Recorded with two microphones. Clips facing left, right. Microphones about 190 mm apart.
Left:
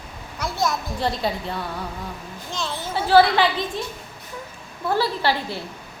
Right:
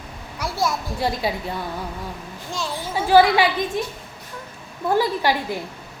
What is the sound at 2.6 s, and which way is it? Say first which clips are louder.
A child's voice: right 1 dB; 10° right (ahead or behind).